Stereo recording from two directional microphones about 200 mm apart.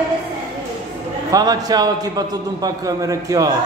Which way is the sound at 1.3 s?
20° right (ahead or behind).